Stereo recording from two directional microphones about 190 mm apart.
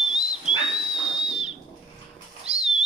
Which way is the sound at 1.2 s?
35° right (ahead or behind).